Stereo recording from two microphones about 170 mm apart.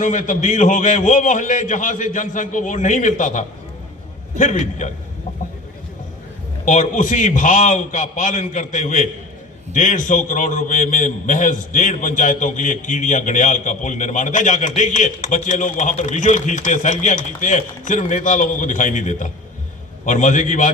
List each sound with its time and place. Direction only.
0.0 s a man's voice: 45° left (ahead or behind)
6.7 s a man's voice: 45° left (ahead or behind)